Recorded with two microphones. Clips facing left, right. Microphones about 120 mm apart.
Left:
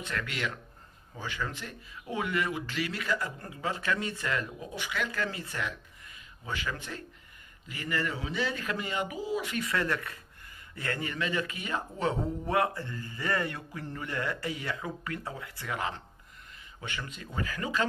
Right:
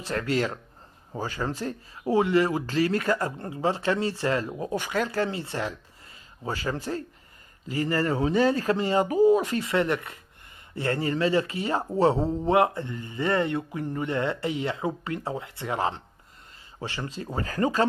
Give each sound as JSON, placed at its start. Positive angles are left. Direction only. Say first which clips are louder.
{"t": 0.0, "sound": "speech", "louder": "right 8 dB", "side_deg": -35}
{"t": 3.3, "sound": "speech", "louder": "right 8 dB", "side_deg": -30}
{"t": 9.6, "sound": "speech", "louder": "right 6 dB", "side_deg": -25}